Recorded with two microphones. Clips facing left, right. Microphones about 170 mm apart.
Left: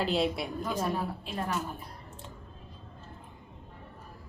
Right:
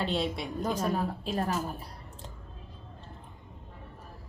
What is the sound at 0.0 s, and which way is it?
Speech, centre (ahead or behind).